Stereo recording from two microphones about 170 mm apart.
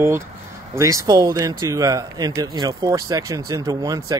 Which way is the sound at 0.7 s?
20° right (ahead or behind).